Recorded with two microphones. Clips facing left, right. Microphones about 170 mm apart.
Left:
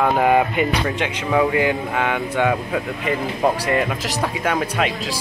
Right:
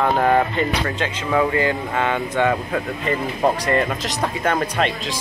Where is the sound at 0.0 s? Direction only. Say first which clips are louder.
Left 1 dB; 10° left (ahead or behind).